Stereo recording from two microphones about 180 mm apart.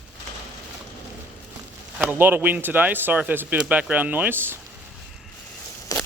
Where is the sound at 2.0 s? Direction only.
10° right (ahead or behind).